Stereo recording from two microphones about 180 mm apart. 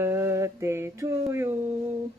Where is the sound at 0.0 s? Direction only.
15° right (ahead or behind).